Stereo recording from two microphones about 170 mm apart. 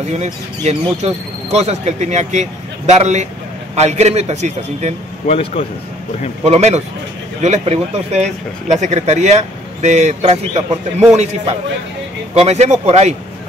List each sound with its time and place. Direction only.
0.1 s speech: 40° right (ahead or behind)
5.2 s speech: 40° left (ahead or behind)
6.4 s speech: 40° right (ahead or behind)
12.4 s speech: 40° right (ahead or behind)